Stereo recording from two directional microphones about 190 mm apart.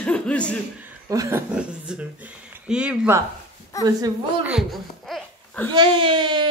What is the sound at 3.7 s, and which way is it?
Speech, 15° left (ahead or behind).